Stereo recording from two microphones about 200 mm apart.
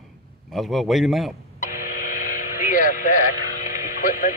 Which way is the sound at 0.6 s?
Centre (ahead or behind).